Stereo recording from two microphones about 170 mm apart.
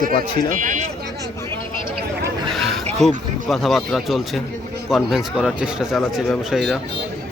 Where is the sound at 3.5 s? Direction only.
Centre (ahead or behind).